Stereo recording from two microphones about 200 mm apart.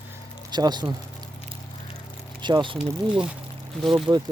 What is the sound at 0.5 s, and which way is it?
Speech, 20° right (ahead or behind).